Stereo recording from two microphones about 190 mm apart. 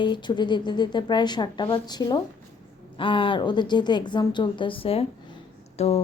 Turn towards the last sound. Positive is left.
turn(degrees=35)  # may be behind; listen again after turning